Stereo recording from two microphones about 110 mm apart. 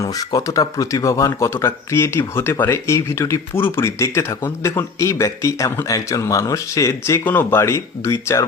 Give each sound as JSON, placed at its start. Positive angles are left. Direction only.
{"t": 0.0, "sound": "speech", "side_deg": 30}